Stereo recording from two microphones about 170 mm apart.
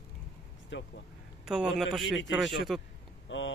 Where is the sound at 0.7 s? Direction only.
90° left.